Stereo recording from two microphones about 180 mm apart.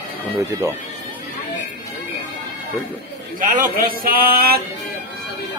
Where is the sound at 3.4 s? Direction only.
50° right (ahead or behind).